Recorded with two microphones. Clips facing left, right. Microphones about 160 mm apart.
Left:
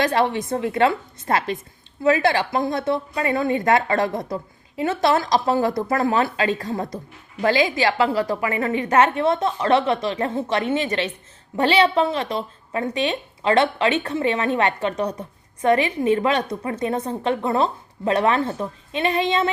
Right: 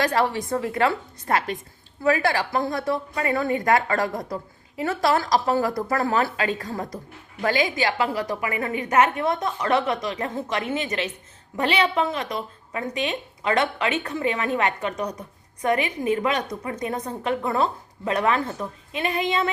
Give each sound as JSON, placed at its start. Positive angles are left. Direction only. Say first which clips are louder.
{"t": 0.0, "sound": "a woman's voice", "louder": "left 2 dB", "side_deg": 25}